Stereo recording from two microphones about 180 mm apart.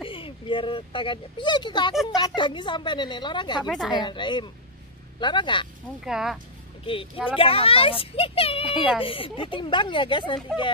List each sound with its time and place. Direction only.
0.0 s a woman's voice: 30° left (ahead or behind)
3.6 s speech: centre (ahead or behind)
3.9 s a woman's voice: 25° left (ahead or behind)
6.0 s speech: 5° right (ahead or behind)
7.3 s speech: 30° left (ahead or behind)
8.6 s speech: 5° right (ahead or behind)
9.0 s a woman's voice: 30° left (ahead or behind)